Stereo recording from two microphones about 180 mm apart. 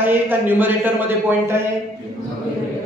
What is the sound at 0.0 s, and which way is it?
A man's voice, 10° right (ahead or behind).